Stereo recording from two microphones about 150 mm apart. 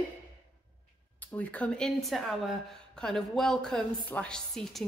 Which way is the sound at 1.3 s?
10° left (ahead or behind).